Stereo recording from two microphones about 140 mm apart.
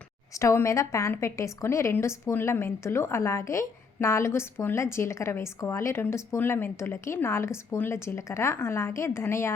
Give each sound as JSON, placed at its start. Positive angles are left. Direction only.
{"t": 0.3, "sound": "a woman's voice", "side_deg": 20}